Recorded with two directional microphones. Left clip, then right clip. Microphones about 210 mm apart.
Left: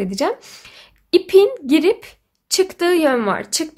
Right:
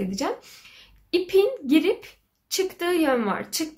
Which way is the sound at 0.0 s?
50° left (ahead or behind).